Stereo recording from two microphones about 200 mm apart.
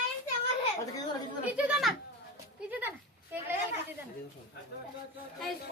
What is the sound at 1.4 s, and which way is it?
Speech, 5° right (ahead or behind).